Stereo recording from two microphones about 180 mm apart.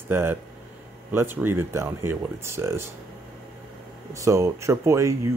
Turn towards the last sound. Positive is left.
turn(degrees=-15)  # may be behind; listen again after turning